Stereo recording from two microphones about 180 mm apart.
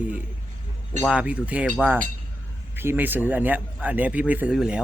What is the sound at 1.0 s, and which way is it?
Speech, 5° right (ahead or behind).